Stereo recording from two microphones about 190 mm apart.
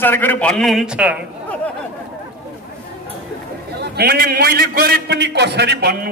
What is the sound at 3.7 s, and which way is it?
A man's voice, 55° right (ahead or behind).